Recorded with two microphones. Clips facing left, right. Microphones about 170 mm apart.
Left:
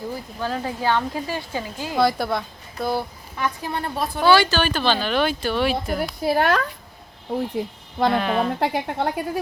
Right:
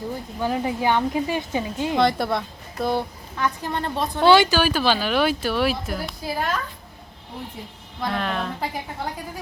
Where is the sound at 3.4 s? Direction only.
15° left (ahead or behind).